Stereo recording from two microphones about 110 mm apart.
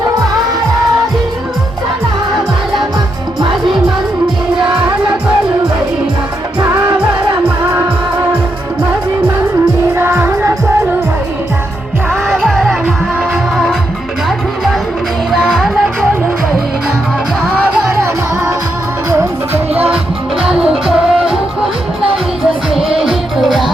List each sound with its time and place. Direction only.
9.9 s music: 20° right (ahead or behind)
12.3 s music: centre (ahead or behind)
14.3 s music: centre (ahead or behind)
20.4 s music: 5° right (ahead or behind)
23.0 s music: centre (ahead or behind)